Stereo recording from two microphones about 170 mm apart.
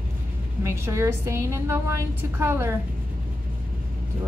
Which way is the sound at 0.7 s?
15° right (ahead or behind).